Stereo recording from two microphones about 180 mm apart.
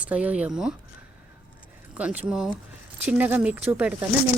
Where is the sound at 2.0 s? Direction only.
5° right (ahead or behind).